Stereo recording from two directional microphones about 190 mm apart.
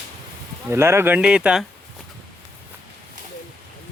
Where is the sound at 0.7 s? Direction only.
15° right (ahead or behind).